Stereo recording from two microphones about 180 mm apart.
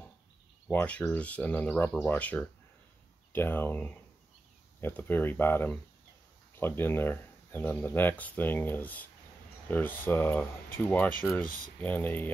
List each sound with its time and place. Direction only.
0.7 s speech: 10° left (ahead or behind)
11.4 s speech: 50° left (ahead or behind)
11.8 s speech: 10° left (ahead or behind)